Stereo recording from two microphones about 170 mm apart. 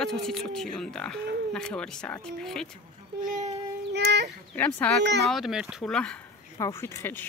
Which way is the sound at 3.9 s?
80° right.